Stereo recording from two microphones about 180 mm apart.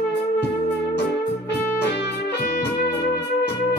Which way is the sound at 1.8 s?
70° left (ahead or behind).